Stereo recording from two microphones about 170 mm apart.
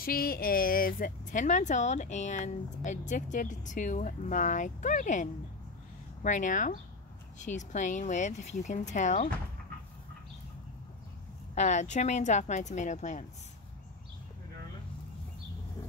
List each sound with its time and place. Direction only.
0.0 s speech: 60° left (ahead or behind)
11.5 s speech: 45° left (ahead or behind)